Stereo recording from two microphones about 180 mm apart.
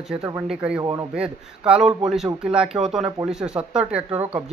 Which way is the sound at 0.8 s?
20° right (ahead or behind).